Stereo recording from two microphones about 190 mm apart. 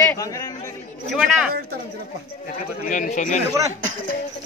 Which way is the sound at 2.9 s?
40° left (ahead or behind).